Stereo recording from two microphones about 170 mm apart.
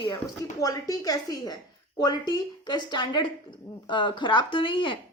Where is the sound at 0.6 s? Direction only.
20° left (ahead or behind).